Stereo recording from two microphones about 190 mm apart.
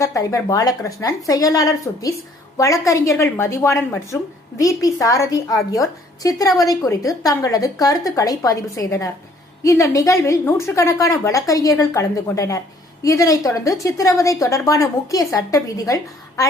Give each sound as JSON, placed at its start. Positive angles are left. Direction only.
{"t": 0.0, "sound": "speech", "side_deg": 15}